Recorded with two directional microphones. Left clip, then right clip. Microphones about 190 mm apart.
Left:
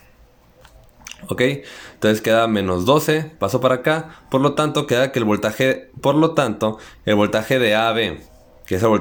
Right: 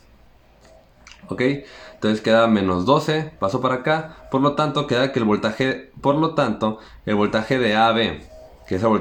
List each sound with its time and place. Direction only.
1.0 s a man's voice: 40° left (ahead or behind)